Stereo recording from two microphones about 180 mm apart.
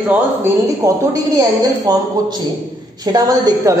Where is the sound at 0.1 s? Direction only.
15° right (ahead or behind).